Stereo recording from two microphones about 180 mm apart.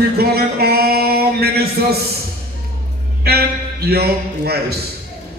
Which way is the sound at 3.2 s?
60° right (ahead or behind).